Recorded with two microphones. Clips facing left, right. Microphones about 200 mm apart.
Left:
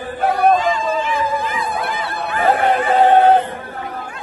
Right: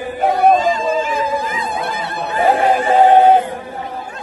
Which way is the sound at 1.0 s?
45° right (ahead or behind).